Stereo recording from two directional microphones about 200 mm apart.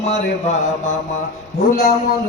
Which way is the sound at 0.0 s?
35° left (ahead or behind).